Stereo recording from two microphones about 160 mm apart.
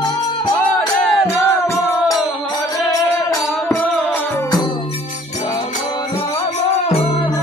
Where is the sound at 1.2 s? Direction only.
20° left (ahead or behind).